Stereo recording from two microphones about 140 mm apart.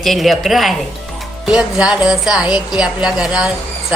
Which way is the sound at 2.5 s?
30° left (ahead or behind).